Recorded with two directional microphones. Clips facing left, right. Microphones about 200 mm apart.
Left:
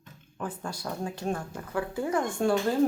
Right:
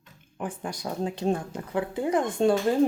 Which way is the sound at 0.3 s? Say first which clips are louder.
Right 2 dB; 15° right (ahead or behind).